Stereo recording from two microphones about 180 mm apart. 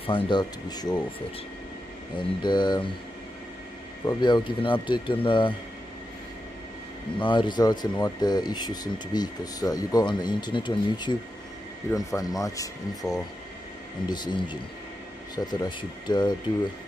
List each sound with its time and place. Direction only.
0.0 s speech: 25° left (ahead or behind)
2.1 s speech: 25° left (ahead or behind)
4.0 s speech: 25° left (ahead or behind)
7.2 s speech: 25° left (ahead or behind)